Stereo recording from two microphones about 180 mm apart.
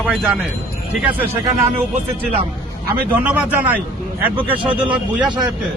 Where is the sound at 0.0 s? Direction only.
Centre (ahead or behind).